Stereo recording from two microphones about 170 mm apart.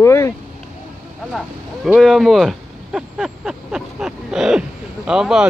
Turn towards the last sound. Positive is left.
turn(degrees=-5)  # may be behind; listen again after turning